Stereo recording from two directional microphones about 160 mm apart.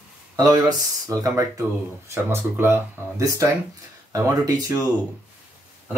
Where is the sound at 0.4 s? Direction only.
25° right (ahead or behind).